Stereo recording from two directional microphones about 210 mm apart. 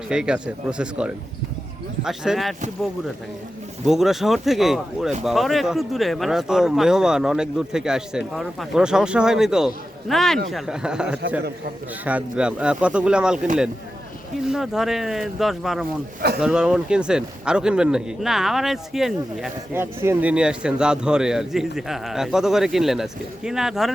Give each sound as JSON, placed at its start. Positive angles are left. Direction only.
{"t": 0.1, "sound": "a man's voice", "side_deg": -5}
{"t": 3.8, "sound": "a man's voice", "side_deg": 0}